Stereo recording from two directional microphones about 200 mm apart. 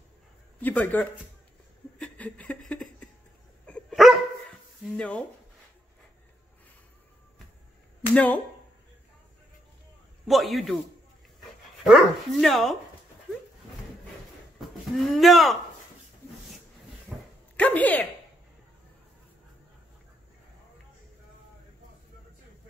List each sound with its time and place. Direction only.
0.6 s speech: 10° left (ahead or behind)
2.0 s a sound: 5° left (ahead or behind)
3.6 s dog: 5° left (ahead or behind)
8.1 s speech: 5° left (ahead or behind)
10.2 s speech: centre (ahead or behind)
11.8 s speech: centre (ahead or behind)
14.6 s speech: centre (ahead or behind)
17.1 s dog: centre (ahead or behind)
17.6 s speech: 10° left (ahead or behind)